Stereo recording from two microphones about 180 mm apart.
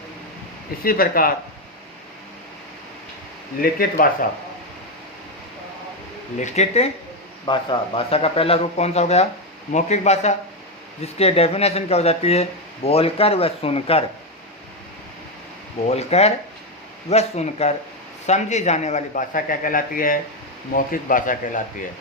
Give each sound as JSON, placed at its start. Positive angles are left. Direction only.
{"t": 0.9, "sound": "speech", "side_deg": 55}
{"t": 3.6, "sound": "speech", "side_deg": 50}
{"t": 6.4, "sound": "speech", "side_deg": 35}
{"t": 7.4, "sound": "speech", "side_deg": 25}
{"t": 15.9, "sound": "speech", "side_deg": 35}